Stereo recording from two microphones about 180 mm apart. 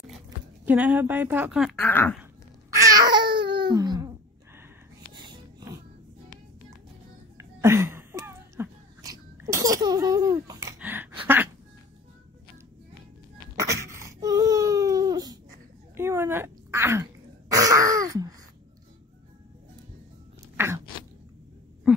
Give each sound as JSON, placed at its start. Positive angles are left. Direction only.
{"t": 0.7, "sound": "speech", "side_deg": -10}
{"t": 1.9, "sound": "speech", "side_deg": 10}
{"t": 2.7, "sound": "cat", "side_deg": -20}
{"t": 5.1, "sound": "wheeze", "side_deg": -25}
{"t": 7.3, "sound": "a sound", "side_deg": -15}
{"t": 13.6, "sound": "baby cry", "side_deg": -15}
{"t": 16.0, "sound": "throat clearing", "side_deg": -15}
{"t": 20.5, "sound": "a sound", "side_deg": -15}